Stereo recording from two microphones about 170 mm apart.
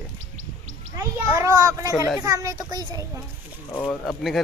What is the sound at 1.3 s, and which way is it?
A child's voice, 20° right (ahead or behind).